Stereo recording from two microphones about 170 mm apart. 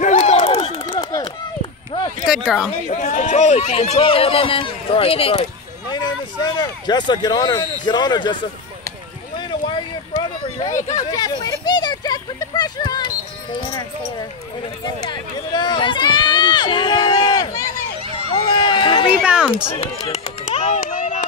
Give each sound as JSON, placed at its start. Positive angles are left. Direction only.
{"t": 0.0, "sound": "run", "side_deg": 45}
{"t": 0.4, "sound": "run", "side_deg": 30}
{"t": 2.2, "sound": "a woman's voice", "side_deg": -5}
{"t": 2.9, "sound": "speech", "side_deg": 45}
{"t": 5.9, "sound": "a man's voice", "side_deg": 25}
{"t": 9.4, "sound": "a sound", "side_deg": 25}
{"t": 10.7, "sound": "speech", "side_deg": 50}
{"t": 11.0, "sound": "a sound", "side_deg": 20}
{"t": 15.0, "sound": "speech", "side_deg": 25}
{"t": 18.3, "sound": "run", "side_deg": 25}
{"t": 19.2, "sound": "a woman's voice", "side_deg": -5}
{"t": 19.8, "sound": "a sound", "side_deg": 35}